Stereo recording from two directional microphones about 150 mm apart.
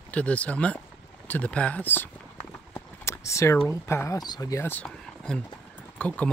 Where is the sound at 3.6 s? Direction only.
20° left (ahead or behind).